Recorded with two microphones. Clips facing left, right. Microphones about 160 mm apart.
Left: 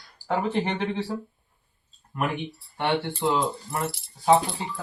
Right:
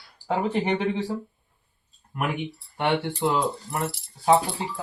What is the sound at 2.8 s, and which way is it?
Speech, 15° right (ahead or behind).